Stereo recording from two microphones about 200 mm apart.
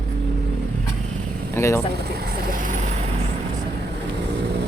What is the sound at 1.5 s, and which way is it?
Speech, 15° left (ahead or behind).